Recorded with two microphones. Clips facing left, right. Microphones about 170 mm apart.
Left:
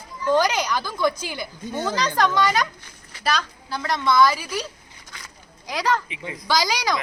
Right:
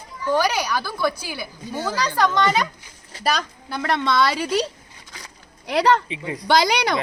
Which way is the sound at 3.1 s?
40° right (ahead or behind).